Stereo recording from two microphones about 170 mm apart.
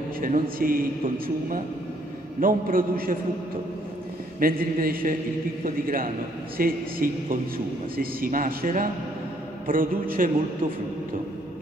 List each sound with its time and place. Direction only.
0.2 s a man's voice: 55° right (ahead or behind)
2.4 s a man's voice: 55° right (ahead or behind)
4.4 s a man's voice: 55° right (ahead or behind)